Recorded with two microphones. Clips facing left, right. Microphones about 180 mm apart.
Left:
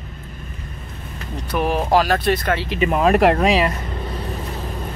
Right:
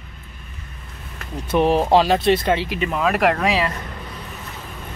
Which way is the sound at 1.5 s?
30° right (ahead or behind).